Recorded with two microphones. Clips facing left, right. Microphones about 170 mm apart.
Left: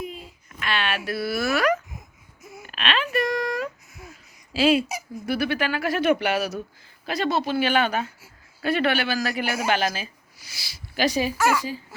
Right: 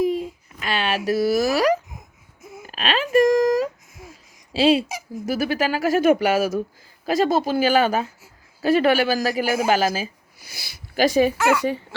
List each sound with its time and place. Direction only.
0.6 s speech: 40° right (ahead or behind)
2.6 s a sound: 40° right (ahead or behind)
4.5 s a woman's voice: 35° right (ahead or behind)
10.5 s speech: 50° right (ahead or behind)
11.6 s speech: 65° right (ahead or behind)